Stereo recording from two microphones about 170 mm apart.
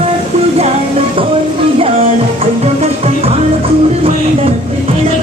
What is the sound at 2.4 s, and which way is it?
Music, 40° right (ahead or behind).